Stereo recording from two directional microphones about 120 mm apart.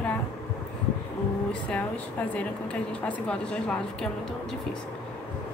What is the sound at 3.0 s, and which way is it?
Speech, 10° left (ahead or behind).